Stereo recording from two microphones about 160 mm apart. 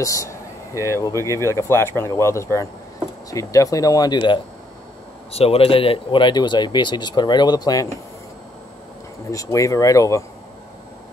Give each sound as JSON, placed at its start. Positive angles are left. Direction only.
{"t": 0.0, "sound": "speech", "side_deg": 20}
{"t": 5.3, "sound": "speech", "side_deg": 40}
{"t": 9.3, "sound": "speech", "side_deg": 20}